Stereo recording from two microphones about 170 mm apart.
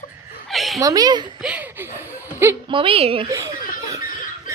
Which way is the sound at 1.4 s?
10° right (ahead or behind).